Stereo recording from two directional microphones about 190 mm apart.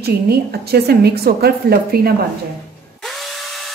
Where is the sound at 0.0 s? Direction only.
55° right (ahead or behind).